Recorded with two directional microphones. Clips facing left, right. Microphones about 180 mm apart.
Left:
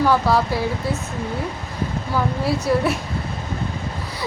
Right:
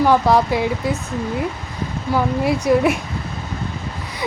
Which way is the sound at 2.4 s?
15° right (ahead or behind).